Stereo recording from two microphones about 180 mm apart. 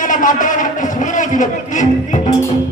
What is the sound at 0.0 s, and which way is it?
A man's voice, 45° left (ahead or behind).